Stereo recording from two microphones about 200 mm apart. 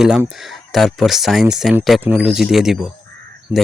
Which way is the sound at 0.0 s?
5° right (ahead or behind).